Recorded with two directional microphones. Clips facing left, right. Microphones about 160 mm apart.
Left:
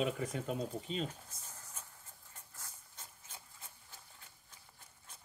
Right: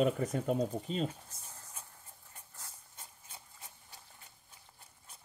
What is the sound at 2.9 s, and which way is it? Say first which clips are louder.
Wood: right 1 dB; 15° right (ahead or behind).